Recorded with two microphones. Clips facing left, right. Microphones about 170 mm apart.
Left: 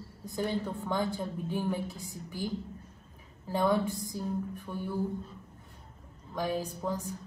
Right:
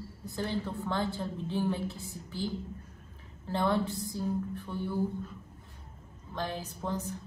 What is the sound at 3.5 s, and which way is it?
A woman's voice, 15° left (ahead or behind).